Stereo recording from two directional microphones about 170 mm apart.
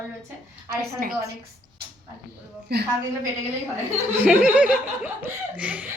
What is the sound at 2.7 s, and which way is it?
Speech, 75° right (ahead or behind).